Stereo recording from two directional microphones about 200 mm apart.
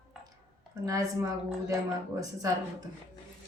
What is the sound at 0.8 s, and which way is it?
Speech, 15° right (ahead or behind).